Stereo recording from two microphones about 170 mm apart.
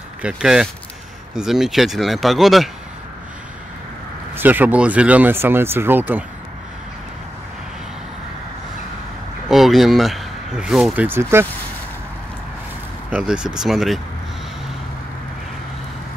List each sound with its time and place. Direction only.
0.2 s speech: 5° right (ahead or behind)
4.4 s speech: 10° right (ahead or behind)
9.5 s speech: centre (ahead or behind)
11.1 s speech: 15° right (ahead or behind)
13.1 s speech: 5° right (ahead or behind)